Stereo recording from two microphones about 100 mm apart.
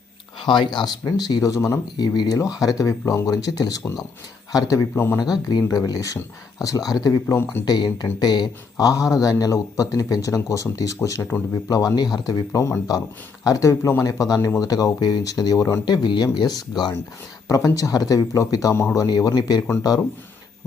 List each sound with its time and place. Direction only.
0.3 s speech: 50° left (ahead or behind); by 4.9 s 35° left (ahead or behind)
4.9 s speech: 25° left (ahead or behind)
5.2 s speech: 45° left (ahead or behind)
15.9 s speech: 50° left (ahead or behind)